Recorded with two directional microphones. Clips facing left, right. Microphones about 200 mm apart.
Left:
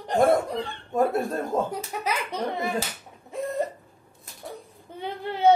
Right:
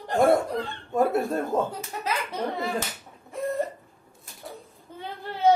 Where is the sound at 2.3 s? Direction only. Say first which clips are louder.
Left 1 dB; 20° left (ahead or behind).